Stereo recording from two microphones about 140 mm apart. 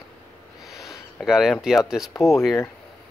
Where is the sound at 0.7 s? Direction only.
Centre (ahead or behind).